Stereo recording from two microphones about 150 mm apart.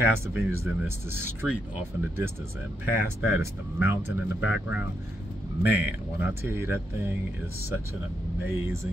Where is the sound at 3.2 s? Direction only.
15° right (ahead or behind).